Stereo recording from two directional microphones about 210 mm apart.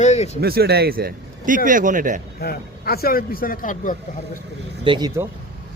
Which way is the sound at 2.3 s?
45° left (ahead or behind).